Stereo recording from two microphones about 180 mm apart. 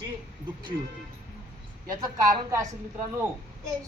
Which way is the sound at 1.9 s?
20° right (ahead or behind).